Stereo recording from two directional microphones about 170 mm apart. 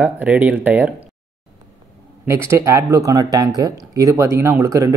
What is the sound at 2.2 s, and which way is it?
Speech, 15° right (ahead or behind).